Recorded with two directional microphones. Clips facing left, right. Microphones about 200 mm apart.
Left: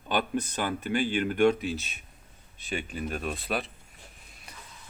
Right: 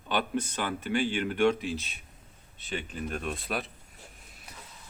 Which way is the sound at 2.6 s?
10° left (ahead or behind).